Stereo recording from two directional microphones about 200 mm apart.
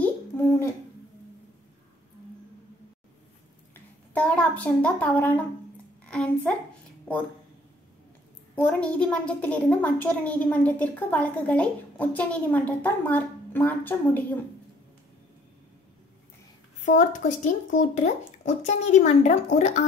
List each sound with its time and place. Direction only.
3.7 s a child's voice: 5° left (ahead or behind)
8.5 s a woman's voice: 5° left (ahead or behind)
16.8 s speech: 40° left (ahead or behind)